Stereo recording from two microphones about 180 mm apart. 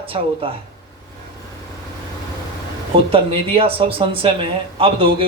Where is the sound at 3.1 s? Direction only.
30° right (ahead or behind).